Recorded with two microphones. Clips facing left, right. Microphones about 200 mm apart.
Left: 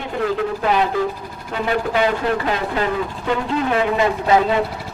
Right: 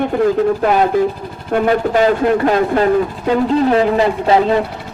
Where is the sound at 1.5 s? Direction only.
45° right (ahead or behind).